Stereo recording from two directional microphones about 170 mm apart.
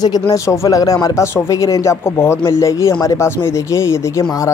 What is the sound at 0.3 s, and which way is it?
Speech, 20° left (ahead or behind).